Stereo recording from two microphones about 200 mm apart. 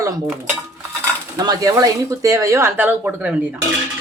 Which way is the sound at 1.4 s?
20° right (ahead or behind).